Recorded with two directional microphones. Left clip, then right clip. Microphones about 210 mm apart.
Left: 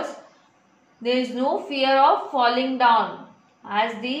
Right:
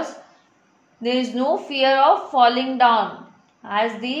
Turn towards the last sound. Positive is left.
turn(degrees=-50)  # may be behind; listen again after turning